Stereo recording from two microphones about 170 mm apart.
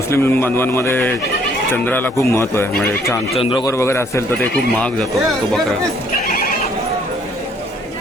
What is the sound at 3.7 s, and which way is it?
Speech, 15° left (ahead or behind).